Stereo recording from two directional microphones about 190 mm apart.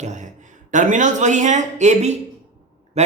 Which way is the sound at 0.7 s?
40° right (ahead or behind).